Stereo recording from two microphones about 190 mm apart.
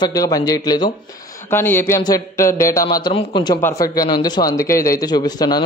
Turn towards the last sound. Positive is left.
turn(degrees=20)  # may be behind; listen again after turning